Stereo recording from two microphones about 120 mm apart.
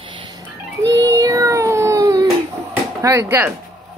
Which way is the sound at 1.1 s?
30° right (ahead or behind).